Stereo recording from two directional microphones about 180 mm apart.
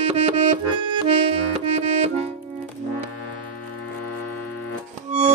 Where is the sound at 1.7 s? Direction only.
35° right (ahead or behind).